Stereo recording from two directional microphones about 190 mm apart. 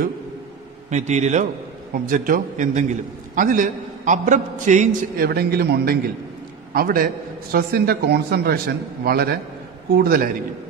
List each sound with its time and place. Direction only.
0.8 s a man's voice: 40° right (ahead or behind)